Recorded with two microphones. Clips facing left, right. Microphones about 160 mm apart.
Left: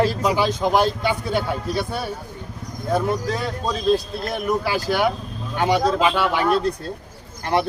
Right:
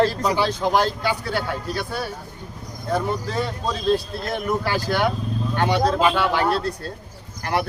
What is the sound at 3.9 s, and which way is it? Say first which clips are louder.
Speech: left 1 dB; 5° left (ahead or behind).